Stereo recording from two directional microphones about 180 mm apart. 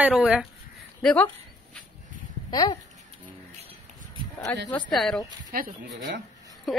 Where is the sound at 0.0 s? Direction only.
5° right (ahead or behind).